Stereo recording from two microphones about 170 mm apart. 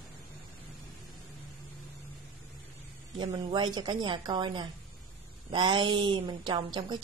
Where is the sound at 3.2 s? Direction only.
25° right (ahead or behind).